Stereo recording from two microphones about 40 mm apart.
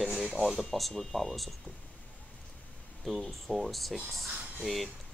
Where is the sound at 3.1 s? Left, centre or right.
Centre.